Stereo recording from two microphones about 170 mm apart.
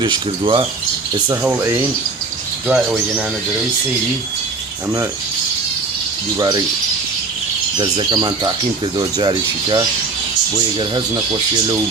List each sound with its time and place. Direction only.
0.0 s speech: 30° right (ahead or behind)
1.3 s speech: 15° right (ahead or behind)
7.8 s speech: 25° right (ahead or behind)